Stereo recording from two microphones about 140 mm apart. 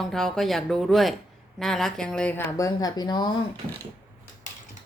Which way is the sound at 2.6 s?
25° left (ahead or behind).